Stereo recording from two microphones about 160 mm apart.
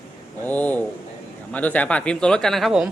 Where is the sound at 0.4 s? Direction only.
10° left (ahead or behind).